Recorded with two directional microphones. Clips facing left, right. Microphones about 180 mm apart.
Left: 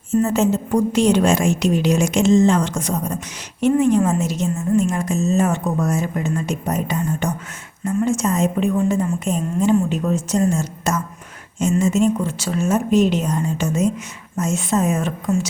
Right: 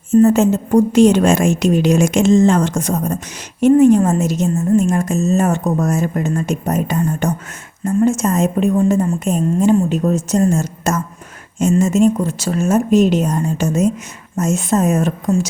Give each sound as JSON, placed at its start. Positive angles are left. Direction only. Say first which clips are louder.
{"t": 0.1, "sound": "a woman's voice", "louder": "right 6 dB", "side_deg": -50}